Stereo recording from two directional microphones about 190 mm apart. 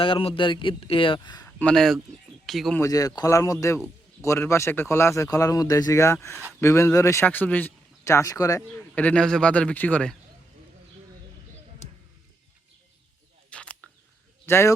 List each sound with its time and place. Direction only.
0.0 s speech: 30° left (ahead or behind)
1.5 s speech: 10° left (ahead or behind)
2.8 s speech: 20° left (ahead or behind)
11.8 s a sound: 40° left (ahead or behind)
13.5 s camera: 5° left (ahead or behind)
14.4 s speech: 15° left (ahead or behind)